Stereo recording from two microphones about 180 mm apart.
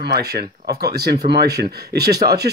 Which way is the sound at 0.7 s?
60° right (ahead or behind).